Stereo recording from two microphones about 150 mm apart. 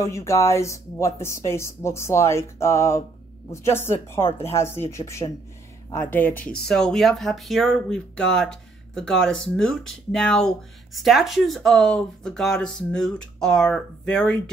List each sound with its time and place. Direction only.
0.0 s speech: 20° left (ahead or behind)